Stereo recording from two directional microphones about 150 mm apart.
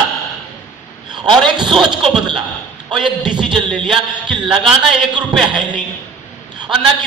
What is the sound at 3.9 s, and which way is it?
Speech, 35° right (ahead or behind).